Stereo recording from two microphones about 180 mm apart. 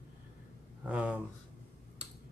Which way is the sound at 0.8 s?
5° right (ahead or behind).